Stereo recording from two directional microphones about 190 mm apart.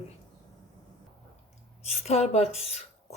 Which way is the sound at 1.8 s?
35° left (ahead or behind).